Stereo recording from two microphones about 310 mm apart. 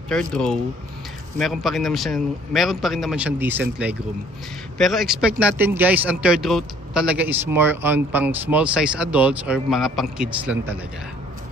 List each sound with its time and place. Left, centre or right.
0.1 s speech: centre